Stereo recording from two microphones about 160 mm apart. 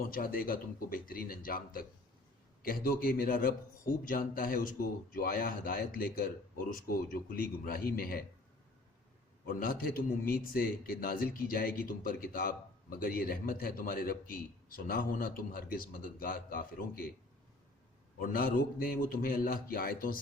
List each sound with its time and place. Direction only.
0.0 s a man's voice: 65° left (ahead or behind)
9.5 s a man's voice: 60° left (ahead or behind)
18.2 s a man's voice: 65° left (ahead or behind)